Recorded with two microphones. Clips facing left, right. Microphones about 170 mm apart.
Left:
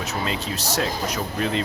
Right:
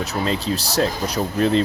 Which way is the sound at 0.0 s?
35° right (ahead or behind).